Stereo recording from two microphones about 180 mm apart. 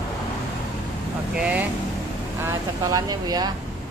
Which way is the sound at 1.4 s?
10° right (ahead or behind).